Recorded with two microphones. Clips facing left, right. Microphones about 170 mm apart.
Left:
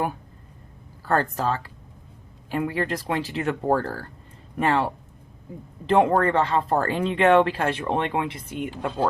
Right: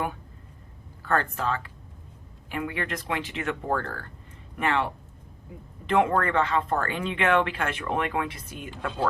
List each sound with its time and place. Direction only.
1.0 s speech: 35° left (ahead or behind)